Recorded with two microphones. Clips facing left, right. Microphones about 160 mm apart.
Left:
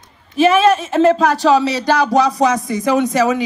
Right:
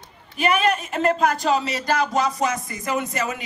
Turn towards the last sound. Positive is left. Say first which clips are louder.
# left 11 dB
turn(degrees=85)